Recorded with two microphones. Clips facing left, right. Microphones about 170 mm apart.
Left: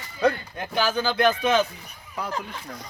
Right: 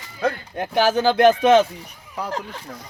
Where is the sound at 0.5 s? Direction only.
60° right (ahead or behind); by 1.5 s 80° right.